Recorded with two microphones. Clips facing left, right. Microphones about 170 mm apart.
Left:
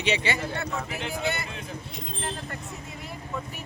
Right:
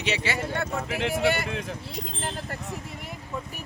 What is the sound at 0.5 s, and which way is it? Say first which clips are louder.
Speech: right 3 dB; 85° right.